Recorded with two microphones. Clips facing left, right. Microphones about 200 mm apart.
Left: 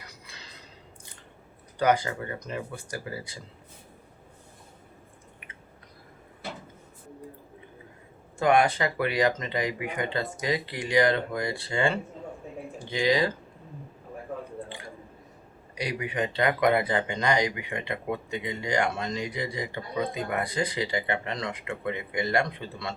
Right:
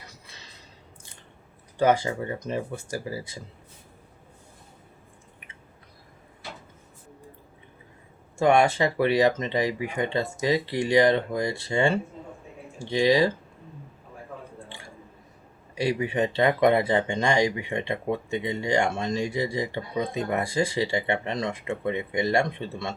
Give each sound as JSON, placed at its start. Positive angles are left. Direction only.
{"t": 1.8, "sound": "speech", "side_deg": -25}
{"t": 8.4, "sound": "speech", "side_deg": -25}
{"t": 15.8, "sound": "speech", "side_deg": -25}